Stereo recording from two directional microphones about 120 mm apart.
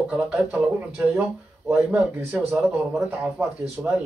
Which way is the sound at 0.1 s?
15° right (ahead or behind).